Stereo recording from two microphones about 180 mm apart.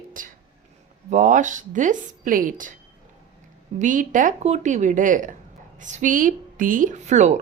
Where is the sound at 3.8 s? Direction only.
45° right (ahead or behind).